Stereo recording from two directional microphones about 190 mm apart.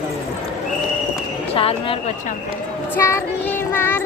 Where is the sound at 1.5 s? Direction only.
30° left (ahead or behind).